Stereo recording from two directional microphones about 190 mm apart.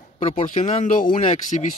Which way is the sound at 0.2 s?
35° left (ahead or behind).